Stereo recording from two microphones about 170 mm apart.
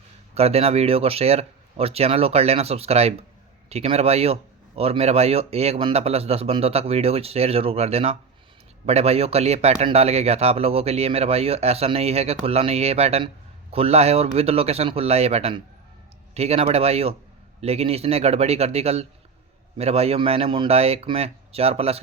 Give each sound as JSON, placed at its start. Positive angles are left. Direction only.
{"t": 0.3, "sound": "speech", "side_deg": -35}